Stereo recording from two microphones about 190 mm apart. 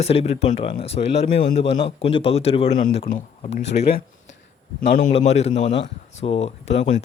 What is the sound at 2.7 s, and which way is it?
Speech, 45° left (ahead or behind).